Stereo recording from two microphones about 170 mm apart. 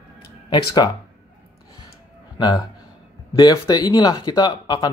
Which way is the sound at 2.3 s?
25° left (ahead or behind).